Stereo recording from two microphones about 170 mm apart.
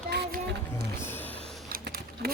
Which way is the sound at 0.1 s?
75° right (ahead or behind).